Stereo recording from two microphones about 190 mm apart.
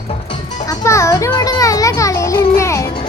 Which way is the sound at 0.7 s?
15° left (ahead or behind).